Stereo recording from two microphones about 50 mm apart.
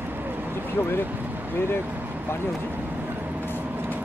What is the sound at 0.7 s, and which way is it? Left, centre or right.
Speech, left.